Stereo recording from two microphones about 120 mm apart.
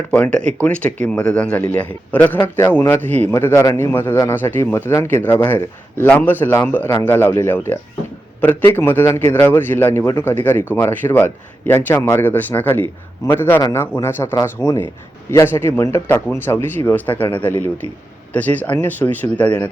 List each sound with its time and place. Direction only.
0.2 s a man's voice: 10° left (ahead or behind)